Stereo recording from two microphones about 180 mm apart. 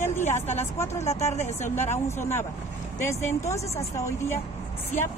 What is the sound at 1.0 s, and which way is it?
Speech, 40° left (ahead or behind).